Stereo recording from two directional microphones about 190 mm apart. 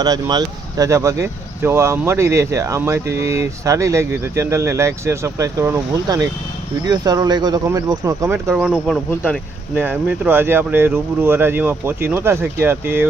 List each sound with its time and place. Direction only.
0.0 s speech: 20° right (ahead or behind); by 9.4 s centre (ahead or behind)
9.8 s speech: 10° right (ahead or behind)